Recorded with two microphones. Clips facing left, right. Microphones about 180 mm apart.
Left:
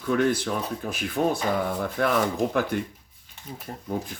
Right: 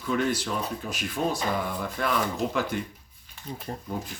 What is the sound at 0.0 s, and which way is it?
Speech, 55° left (ahead or behind).